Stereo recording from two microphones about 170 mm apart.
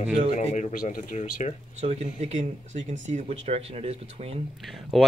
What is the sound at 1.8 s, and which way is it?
Speech, 40° right (ahead or behind).